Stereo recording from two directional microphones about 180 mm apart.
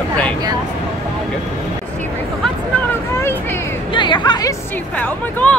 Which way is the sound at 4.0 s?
25° left (ahead or behind).